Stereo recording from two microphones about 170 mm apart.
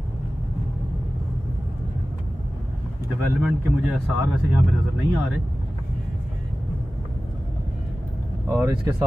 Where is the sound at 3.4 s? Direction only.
5° right (ahead or behind).